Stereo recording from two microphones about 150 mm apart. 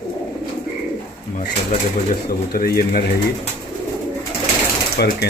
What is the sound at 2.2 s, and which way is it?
Speech, 90° left.